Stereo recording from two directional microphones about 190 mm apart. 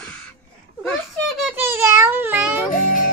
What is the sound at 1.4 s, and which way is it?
A child's voice, 10° right (ahead or behind).